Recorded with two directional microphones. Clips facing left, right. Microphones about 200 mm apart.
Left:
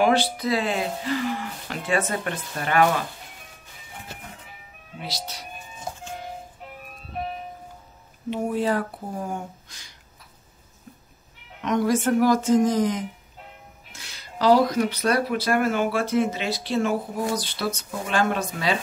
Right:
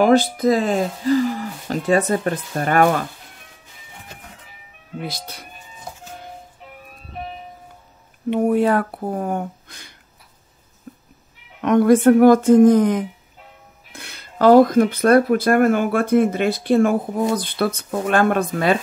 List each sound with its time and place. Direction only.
0.0 s speech: 45° right (ahead or behind)
5.0 s speech: 55° right (ahead or behind)
8.3 s speech: 60° right (ahead or behind)
11.6 s speech: 55° right (ahead or behind)